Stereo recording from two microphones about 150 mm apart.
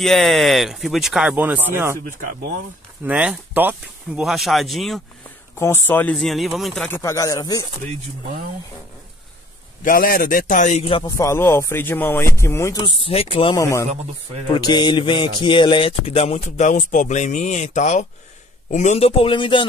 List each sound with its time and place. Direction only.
0.0 s speech: centre (ahead or behind); by 2.0 s 15° right (ahead or behind)
3.0 s speech: 10° right (ahead or behind)
5.6 s speech: 15° left (ahead or behind)
6.1 s speech: centre (ahead or behind)
6.9 s speech: 20° left (ahead or behind)
9.8 s a man's voice: 75° left (ahead or behind); by 10.9 s 55° left (ahead or behind)
11.1 s speech: 20° left (ahead or behind)
12.7 s a man's voice: 35° left (ahead or behind)
13.6 s speech: 20° left (ahead or behind)
14.5 s a sound: 30° left (ahead or behind); by 18.0 s 55° left (ahead or behind)
18.7 s a man's voice: 50° left (ahead or behind); by 19.6 s 35° left (ahead or behind)